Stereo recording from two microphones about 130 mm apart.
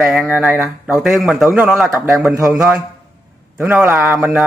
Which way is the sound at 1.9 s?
20° right (ahead or behind).